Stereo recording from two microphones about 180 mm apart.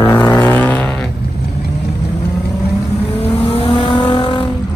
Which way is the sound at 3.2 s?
35° left (ahead or behind).